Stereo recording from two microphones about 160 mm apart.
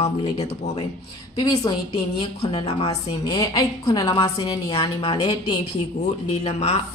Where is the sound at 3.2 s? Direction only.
20° left (ahead or behind).